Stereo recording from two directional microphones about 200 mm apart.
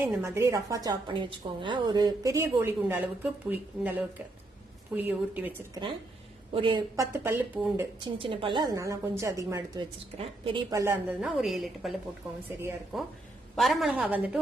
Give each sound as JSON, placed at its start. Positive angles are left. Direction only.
{"t": 0.0, "sound": "a woman's voice", "side_deg": -15}
{"t": 6.5, "sound": "a woman's voice", "side_deg": -25}
{"t": 7.9, "sound": "a woman's voice", "side_deg": -25}
{"t": 11.2, "sound": "a woman's voice", "side_deg": 0}
{"t": 12.5, "sound": "a woman's voice", "side_deg": -10}
{"t": 12.9, "sound": "a woman's voice", "side_deg": 0}